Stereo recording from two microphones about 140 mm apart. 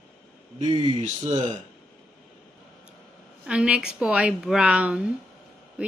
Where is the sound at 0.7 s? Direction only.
35° right (ahead or behind).